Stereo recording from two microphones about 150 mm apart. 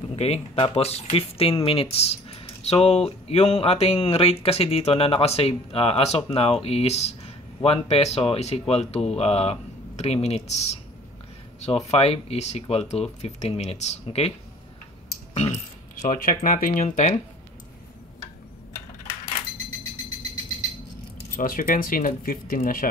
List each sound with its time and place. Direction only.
0.1 s speech: 40° left (ahead or behind)
11.9 s speech: 40° left (ahead or behind)
15.3 s speech: 45° left (ahead or behind)
21.4 s speech: 65° left (ahead or behind)